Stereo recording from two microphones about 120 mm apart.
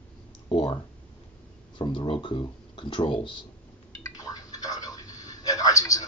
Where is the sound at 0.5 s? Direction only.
40° left (ahead or behind).